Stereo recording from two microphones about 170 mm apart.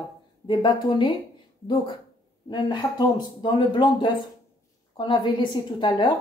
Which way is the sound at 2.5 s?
25° left (ahead or behind).